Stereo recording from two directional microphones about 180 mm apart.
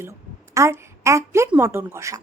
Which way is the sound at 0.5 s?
15° right (ahead or behind).